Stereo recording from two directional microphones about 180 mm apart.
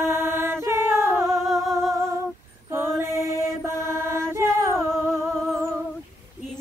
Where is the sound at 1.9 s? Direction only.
15° right (ahead or behind).